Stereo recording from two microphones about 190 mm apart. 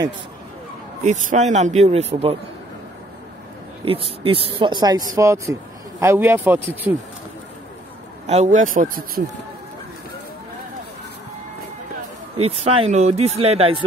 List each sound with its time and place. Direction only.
1.0 s speech: 40° right (ahead or behind)
3.8 s a man's voice: 30° right (ahead or behind); by 7.0 s 10° right (ahead or behind)
8.3 s speech: 40° right (ahead or behind)
12.4 s speech: 30° right (ahead or behind)